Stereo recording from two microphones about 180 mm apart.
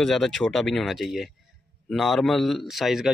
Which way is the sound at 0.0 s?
5° left (ahead or behind).